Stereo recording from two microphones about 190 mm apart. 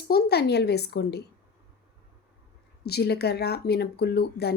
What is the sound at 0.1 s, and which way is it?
Speech, 60° left (ahead or behind).